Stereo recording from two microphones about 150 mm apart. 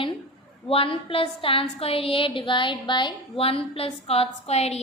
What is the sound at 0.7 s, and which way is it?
A woman's voice, 40° left (ahead or behind).